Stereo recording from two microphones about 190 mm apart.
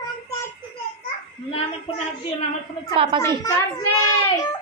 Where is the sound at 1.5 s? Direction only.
30° left (ahead or behind).